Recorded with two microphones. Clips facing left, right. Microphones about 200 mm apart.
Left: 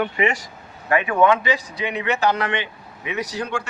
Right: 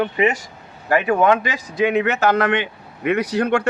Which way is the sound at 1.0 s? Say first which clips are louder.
Even; 45° right (ahead or behind).